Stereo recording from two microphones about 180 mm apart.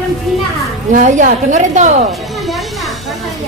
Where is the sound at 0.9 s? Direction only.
40° right (ahead or behind).